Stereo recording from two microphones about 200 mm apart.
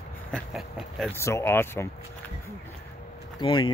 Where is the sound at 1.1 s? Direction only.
15° left (ahead or behind).